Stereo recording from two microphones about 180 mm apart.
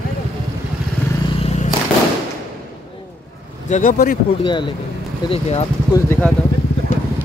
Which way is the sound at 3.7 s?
45° left (ahead or behind).